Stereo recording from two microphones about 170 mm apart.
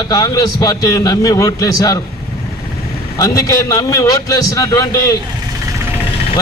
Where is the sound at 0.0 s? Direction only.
25° left (ahead or behind).